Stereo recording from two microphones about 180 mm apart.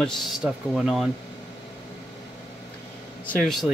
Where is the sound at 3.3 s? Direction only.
Centre (ahead or behind).